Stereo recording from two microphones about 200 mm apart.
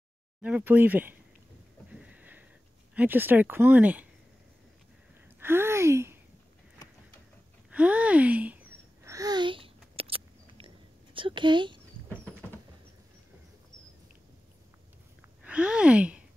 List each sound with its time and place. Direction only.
0.4 s speech: 5° right (ahead or behind)
1.9 s a sound: 5° right (ahead or behind)
2.9 s speech: 10° right (ahead or behind)
5.4 s speech: 10° right (ahead or behind)
7.7 s speech: 5° right (ahead or behind)
9.0 s a sound: 15° right (ahead or behind)
11.1 s speech: 25° right (ahead or behind)
15.4 s speech: 5° right (ahead or behind)